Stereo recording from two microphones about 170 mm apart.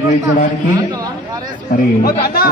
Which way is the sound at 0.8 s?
25° right (ahead or behind).